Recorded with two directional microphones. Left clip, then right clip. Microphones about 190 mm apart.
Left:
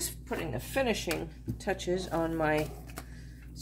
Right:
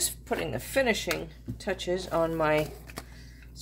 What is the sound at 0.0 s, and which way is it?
A woman's voice, 40° right (ahead or behind).